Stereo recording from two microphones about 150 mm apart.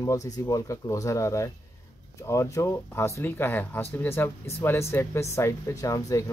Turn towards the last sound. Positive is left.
turn(degrees=20)  # may be behind; listen again after turning